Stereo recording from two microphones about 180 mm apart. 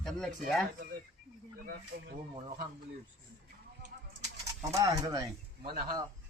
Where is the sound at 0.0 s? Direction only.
Centre (ahead or behind).